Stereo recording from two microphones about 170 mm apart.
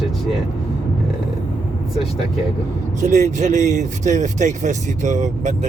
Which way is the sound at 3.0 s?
45° right (ahead or behind).